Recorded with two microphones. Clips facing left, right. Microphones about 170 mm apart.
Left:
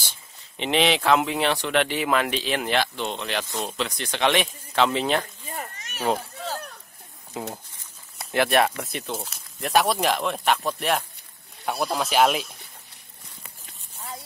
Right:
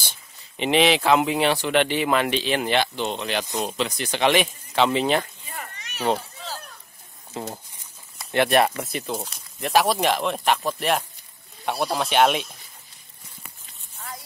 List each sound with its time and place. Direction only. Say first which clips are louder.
0.6 s speech: right 3 dB; 5° right (ahead or behind)
5.6 s a sound: left 1 dB; 45° left (ahead or behind)
7.3 s speech: even; 5° left (ahead or behind)